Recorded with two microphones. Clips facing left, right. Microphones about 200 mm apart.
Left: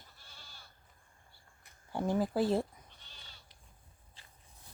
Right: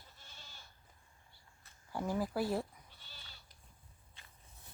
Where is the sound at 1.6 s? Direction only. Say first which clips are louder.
Left 4 dB; 25° left (ahead or behind).